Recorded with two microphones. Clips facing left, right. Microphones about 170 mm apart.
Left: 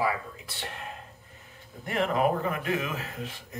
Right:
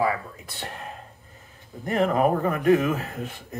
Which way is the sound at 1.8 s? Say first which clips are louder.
Right 4 dB; 40° right (ahead or behind).